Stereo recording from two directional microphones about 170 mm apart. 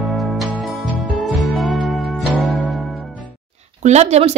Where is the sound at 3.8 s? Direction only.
40° right (ahead or behind).